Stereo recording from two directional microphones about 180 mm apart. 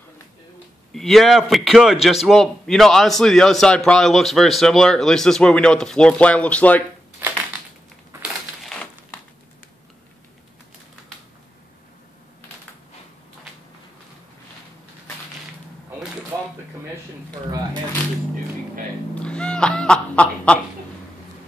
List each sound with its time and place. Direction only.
0.9 s a man's voice: centre (ahead or behind)
8.6 s crumpling: 5° left (ahead or behind)
16.3 s a sound: 15° right (ahead or behind)
19.2 s fowl: 5° left (ahead or behind)